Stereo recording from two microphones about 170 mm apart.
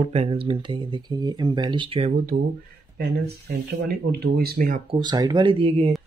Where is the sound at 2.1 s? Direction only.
55° right (ahead or behind).